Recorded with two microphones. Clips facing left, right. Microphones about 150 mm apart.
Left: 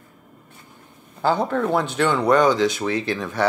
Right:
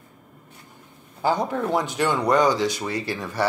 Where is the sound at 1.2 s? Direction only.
15° right (ahead or behind).